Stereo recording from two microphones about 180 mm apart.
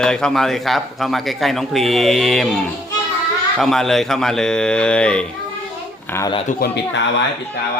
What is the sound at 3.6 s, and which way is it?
A man's voice, centre (ahead or behind).